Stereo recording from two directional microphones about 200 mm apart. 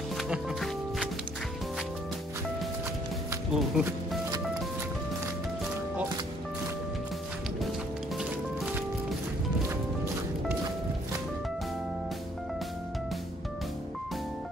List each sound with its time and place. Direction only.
0.2 s music: centre (ahead or behind)
3.5 s speech: centre (ahead or behind)